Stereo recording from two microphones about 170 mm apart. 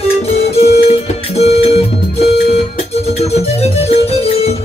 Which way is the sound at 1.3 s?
40° left (ahead or behind).